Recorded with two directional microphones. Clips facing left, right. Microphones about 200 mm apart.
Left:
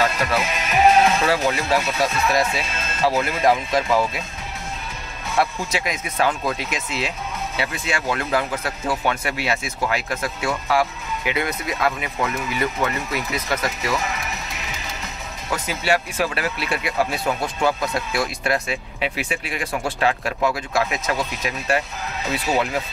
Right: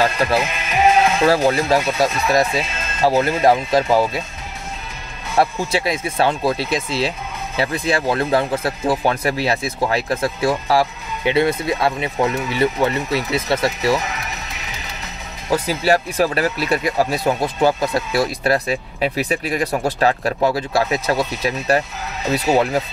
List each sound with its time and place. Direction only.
0.0 s music: 35° right (ahead or behind)
1.2 s speech: 35° right (ahead or behind)
5.4 s speech: 35° right (ahead or behind)
15.5 s speech: 35° right (ahead or behind)